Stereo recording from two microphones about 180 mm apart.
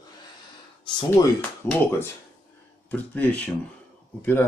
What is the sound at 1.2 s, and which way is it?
Speech, 20° left (ahead or behind).